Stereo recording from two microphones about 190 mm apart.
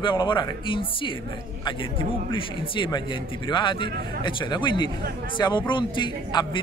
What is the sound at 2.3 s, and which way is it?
A man's voice, 25° left (ahead or behind).